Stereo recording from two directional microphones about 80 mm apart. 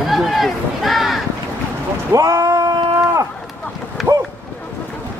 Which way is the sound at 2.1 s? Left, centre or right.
Right.